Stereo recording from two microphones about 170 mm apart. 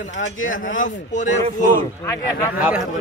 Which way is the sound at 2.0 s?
15° left (ahead or behind).